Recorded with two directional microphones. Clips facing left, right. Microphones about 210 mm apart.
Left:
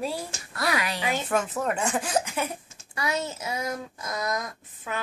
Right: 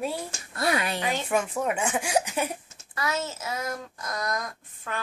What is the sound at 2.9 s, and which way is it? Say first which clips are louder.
A child's voice: left 1 dB; 15° left (ahead or behind).